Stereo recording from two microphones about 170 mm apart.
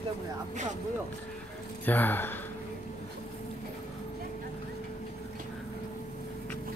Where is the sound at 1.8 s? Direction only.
10° left (ahead or behind).